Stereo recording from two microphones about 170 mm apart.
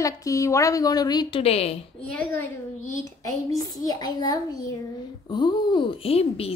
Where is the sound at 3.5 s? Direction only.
20° left (ahead or behind).